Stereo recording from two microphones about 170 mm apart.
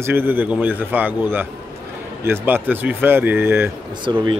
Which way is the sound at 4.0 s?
30° right (ahead or behind).